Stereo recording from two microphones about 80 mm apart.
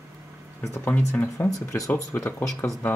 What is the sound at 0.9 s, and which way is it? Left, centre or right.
Speech, centre.